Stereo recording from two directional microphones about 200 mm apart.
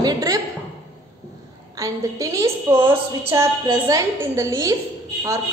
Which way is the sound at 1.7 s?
15° right (ahead or behind).